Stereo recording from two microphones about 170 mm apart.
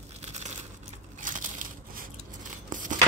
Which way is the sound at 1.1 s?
50° right (ahead or behind).